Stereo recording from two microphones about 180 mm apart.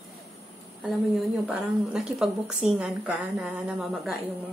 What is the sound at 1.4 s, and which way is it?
A woman's voice, 5° right (ahead or behind).